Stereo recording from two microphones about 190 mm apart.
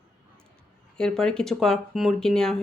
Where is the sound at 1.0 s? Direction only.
5° left (ahead or behind).